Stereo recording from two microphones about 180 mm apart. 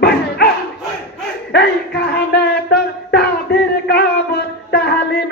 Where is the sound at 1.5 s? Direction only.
70° left (ahead or behind).